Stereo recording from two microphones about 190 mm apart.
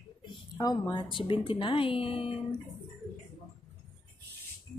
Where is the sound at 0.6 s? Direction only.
20° left (ahead or behind).